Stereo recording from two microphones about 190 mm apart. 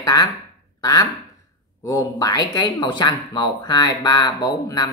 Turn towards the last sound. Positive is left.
turn(degrees=20)  # may be behind; listen again after turning